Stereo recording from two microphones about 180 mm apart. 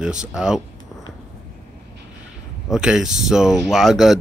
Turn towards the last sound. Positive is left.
turn(degrees=0)  # may be behind; listen again after turning